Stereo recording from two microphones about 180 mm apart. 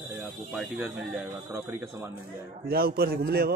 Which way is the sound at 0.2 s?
5° right (ahead or behind).